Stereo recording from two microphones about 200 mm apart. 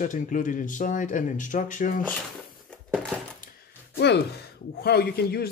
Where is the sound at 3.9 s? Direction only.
60° left (ahead or behind).